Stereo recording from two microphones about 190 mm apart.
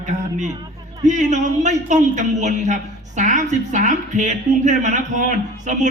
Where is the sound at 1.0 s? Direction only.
40° right (ahead or behind).